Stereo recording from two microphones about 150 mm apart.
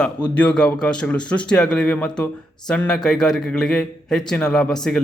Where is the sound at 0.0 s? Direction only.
10° left (ahead or behind).